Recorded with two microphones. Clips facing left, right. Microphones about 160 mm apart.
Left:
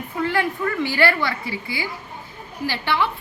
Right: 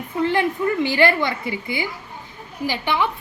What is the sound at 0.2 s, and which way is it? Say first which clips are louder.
A woman's voice: right 3 dB; 20° right (ahead or behind).